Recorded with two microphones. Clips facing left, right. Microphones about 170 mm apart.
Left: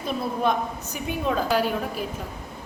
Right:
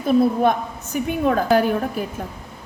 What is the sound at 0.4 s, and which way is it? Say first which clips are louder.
A woman's voice: right 4 dB; 55° right (ahead or behind).